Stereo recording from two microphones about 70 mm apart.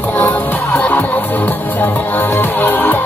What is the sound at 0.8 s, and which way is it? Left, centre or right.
Music, left.